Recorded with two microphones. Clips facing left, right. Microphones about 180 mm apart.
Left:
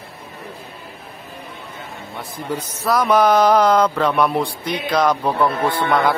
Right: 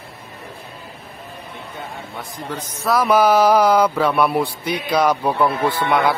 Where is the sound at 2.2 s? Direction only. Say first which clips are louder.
Left 4 dB; 10° left (ahead or behind).